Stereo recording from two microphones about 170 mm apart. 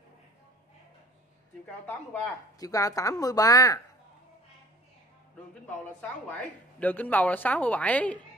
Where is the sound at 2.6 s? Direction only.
20° left (ahead or behind).